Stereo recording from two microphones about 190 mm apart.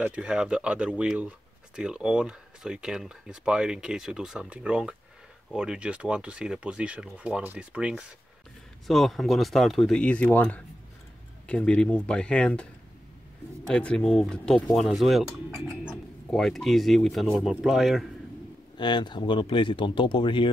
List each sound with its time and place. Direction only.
0.0 s speech: 5° right (ahead or behind)
13.7 s speech: 5° left (ahead or behind)
18.8 s speech: 25° left (ahead or behind)